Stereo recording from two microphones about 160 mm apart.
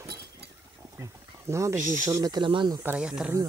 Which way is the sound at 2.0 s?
25° right (ahead or behind).